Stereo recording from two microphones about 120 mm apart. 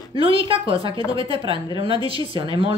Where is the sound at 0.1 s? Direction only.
50° right (ahead or behind).